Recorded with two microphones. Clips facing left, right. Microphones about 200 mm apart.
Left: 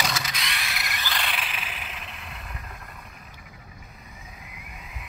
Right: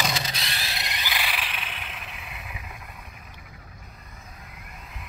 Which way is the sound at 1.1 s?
Centre (ahead or behind).